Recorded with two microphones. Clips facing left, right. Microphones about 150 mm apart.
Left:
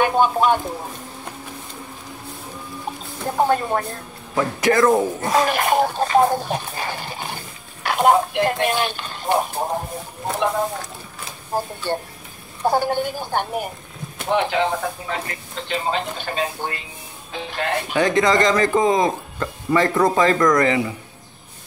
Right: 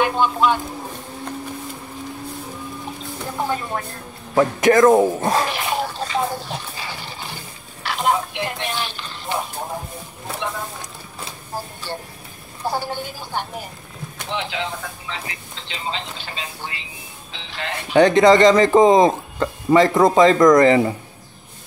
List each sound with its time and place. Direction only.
0.0 s speech: 50° left (ahead or behind)
3.3 s speech: 45° left (ahead or behind)
4.4 s speech: 20° right (ahead or behind)
5.5 s speech: 50° left (ahead or behind)
11.5 s speech: 50° left (ahead or behind)
17.9 s speech: 25° right (ahead or behind)
20.6 s speech: 35° right (ahead or behind)